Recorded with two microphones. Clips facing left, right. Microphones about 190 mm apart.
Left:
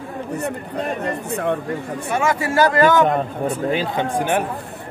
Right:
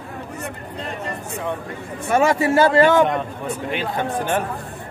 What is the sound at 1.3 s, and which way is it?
Speech, 60° left (ahead or behind).